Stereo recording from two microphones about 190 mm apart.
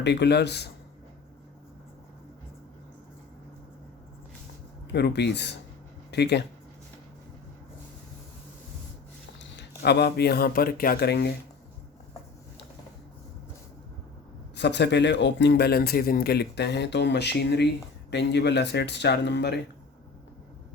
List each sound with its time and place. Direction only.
0.0 s a man's voice: 60° left (ahead or behind)
4.9 s a man's voice: 65° left (ahead or behind)
9.4 s speech: 65° left (ahead or behind)
14.5 s a man's voice: 65° left (ahead or behind)